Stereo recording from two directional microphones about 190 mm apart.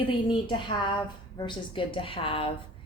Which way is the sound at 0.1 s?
25° left (ahead or behind).